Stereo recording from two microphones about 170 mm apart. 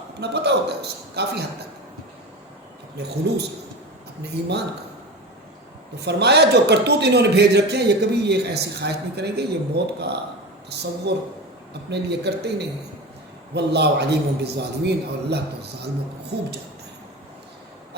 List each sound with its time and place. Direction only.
0.2 s a man's voice: 75° right (ahead or behind)
3.3 s a man's voice: 80° right
6.1 s a man's voice: 80° right